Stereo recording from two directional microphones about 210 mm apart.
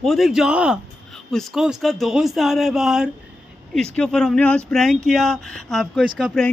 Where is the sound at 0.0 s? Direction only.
Centre (ahead or behind).